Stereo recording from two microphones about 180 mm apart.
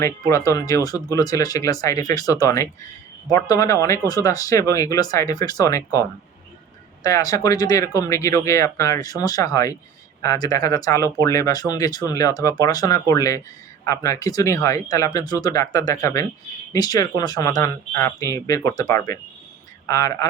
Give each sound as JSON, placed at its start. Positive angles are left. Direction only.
{"t": 0.0, "sound": "speech", "side_deg": 15}